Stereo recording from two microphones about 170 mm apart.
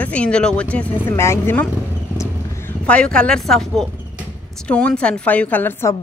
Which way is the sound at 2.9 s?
5° left (ahead or behind).